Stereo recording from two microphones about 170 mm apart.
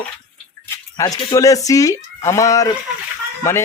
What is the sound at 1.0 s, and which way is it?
A man's voice, 20° left (ahead or behind).